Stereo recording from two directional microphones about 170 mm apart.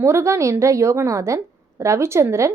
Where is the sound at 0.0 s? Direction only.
15° right (ahead or behind).